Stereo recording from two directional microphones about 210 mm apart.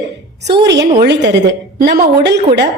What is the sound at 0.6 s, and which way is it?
A woman's voice, 55° right (ahead or behind).